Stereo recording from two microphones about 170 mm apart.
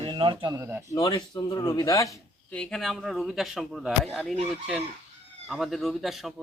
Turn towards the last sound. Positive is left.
turn(degrees=0)  # may be behind; listen again after turning